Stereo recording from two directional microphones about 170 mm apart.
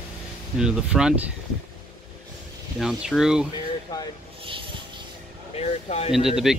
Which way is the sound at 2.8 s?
Centre (ahead or behind).